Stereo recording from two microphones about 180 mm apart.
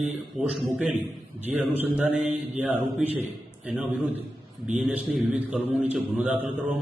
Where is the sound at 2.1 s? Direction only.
40° right (ahead or behind).